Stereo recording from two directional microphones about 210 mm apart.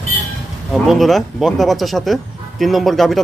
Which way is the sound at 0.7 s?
Centre (ahead or behind).